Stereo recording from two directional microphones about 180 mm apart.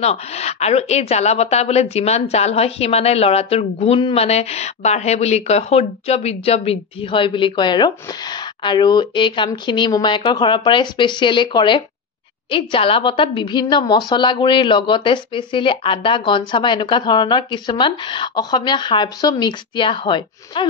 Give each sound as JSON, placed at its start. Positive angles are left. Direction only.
{"t": 0.0, "sound": "a woman's voice", "side_deg": 35}